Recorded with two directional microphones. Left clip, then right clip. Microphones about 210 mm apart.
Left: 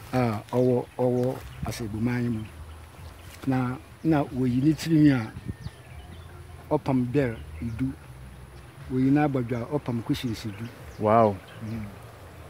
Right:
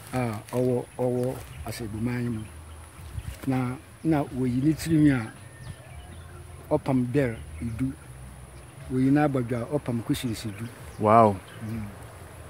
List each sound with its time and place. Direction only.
0.1 s speech: 35° left (ahead or behind)
0.6 s speech: 25° left (ahead or behind)
3.4 s speech: 15° left (ahead or behind)
6.7 s speech: centre (ahead or behind)
8.9 s speech: 5° right (ahead or behind)